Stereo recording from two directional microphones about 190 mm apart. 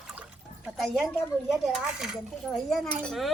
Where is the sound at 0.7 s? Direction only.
Centre (ahead or behind).